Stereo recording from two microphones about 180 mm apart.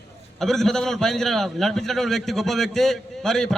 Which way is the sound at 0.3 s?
Centre (ahead or behind).